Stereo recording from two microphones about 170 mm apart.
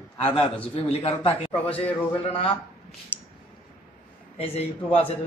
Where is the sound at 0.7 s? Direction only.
35° left (ahead or behind).